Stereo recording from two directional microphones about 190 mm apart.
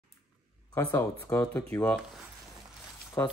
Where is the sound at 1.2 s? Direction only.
15° left (ahead or behind).